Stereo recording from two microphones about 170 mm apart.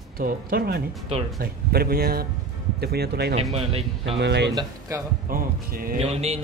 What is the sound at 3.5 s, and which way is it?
Speech, 35° right (ahead or behind).